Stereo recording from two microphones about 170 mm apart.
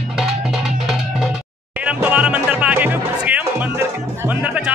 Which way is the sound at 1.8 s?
10° right (ahead or behind).